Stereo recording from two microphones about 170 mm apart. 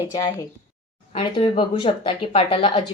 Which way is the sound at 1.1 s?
30° left (ahead or behind).